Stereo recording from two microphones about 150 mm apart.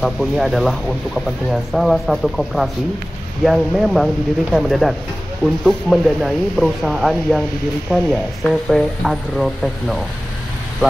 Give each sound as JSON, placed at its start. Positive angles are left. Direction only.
{"t": 0.0, "sound": "speech", "side_deg": 0}